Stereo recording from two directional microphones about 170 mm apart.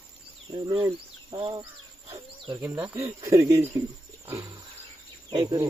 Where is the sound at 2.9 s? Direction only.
15° right (ahead or behind).